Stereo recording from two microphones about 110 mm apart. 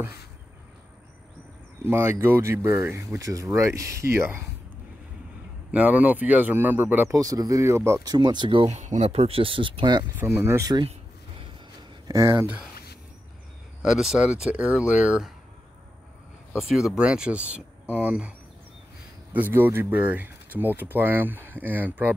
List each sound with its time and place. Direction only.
1.8 s speech: 20° right (ahead or behind)
5.7 s speech: 15° right (ahead or behind)
7.2 s speech: 35° right (ahead or behind)
8.1 s speech: 40° right (ahead or behind)
8.6 s speech: 90° right; by 10.0 s 45° right (ahead or behind)
10.1 s speech: 20° right (ahead or behind)
12.1 s speech: 30° right (ahead or behind)
13.8 s speech: 5° right (ahead or behind)
16.5 s speech: 5° right (ahead or behind)
19.3 s speech: 20° right (ahead or behind)